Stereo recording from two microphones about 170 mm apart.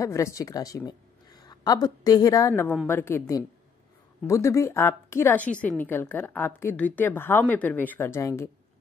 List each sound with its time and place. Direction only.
0.0 s a woman's voice: 20° left (ahead or behind)